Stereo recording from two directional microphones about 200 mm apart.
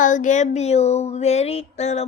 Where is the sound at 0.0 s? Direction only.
40° left (ahead or behind).